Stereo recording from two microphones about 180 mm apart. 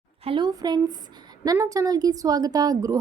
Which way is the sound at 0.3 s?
25° right (ahead or behind).